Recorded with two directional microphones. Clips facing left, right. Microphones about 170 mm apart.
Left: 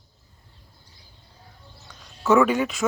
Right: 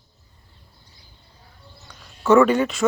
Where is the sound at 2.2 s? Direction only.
5° left (ahead or behind).